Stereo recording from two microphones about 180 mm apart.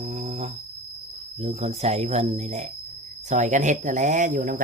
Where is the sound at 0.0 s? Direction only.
40° right (ahead or behind).